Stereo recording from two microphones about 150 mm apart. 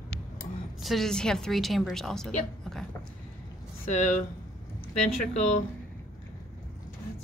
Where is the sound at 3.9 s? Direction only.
50° left (ahead or behind).